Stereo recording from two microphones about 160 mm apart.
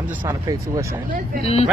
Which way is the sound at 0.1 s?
10° right (ahead or behind).